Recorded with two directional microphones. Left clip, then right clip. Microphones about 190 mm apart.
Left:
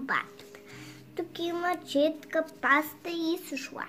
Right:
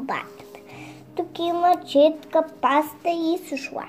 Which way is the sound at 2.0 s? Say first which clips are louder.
Right 8 dB; 30° left (ahead or behind).